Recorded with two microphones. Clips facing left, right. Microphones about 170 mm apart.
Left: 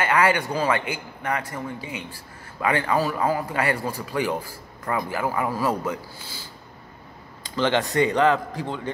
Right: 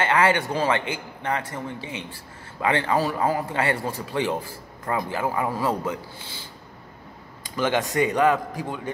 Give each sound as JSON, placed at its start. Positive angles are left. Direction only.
{"t": 0.0, "sound": "a man's voice", "side_deg": -25}
{"t": 7.6, "sound": "a man's voice", "side_deg": -15}